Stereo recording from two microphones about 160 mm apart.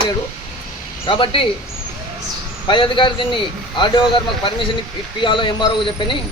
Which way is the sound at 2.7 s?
30° left (ahead or behind).